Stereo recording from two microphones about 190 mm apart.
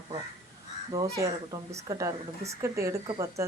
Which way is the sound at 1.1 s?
15° right (ahead or behind).